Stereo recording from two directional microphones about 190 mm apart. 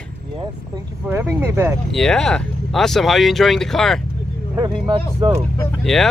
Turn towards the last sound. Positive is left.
turn(degrees=0)  # may be behind; listen again after turning